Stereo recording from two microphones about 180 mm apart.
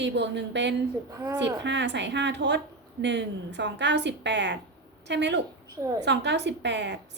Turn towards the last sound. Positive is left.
turn(degrees=-75)  # may be behind; listen again after turning